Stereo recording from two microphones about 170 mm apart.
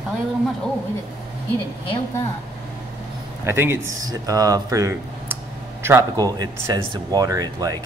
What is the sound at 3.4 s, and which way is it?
A man's voice, 15° right (ahead or behind).